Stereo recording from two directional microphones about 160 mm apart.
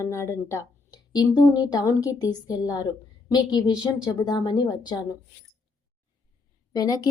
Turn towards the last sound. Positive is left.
turn(degrees=25)  # may be behind; listen again after turning